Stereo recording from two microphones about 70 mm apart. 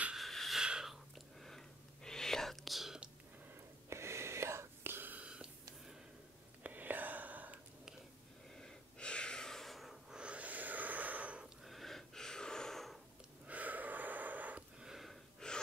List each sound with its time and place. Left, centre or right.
0.1 s wheeze: centre
0.6 s a sound: centre
2.0 s whispering: centre
3.9 s whispering: right
5.3 s snort: centre
6.6 s whispering: right
8.5 s snort: centre
10.1 s snort: centre
11.6 s a sound: centre
13.5 s gasp: right
14.8 s a sound: centre
15.4 s gasp: centre